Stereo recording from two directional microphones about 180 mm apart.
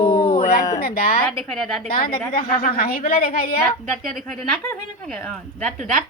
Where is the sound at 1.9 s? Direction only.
55° left (ahead or behind).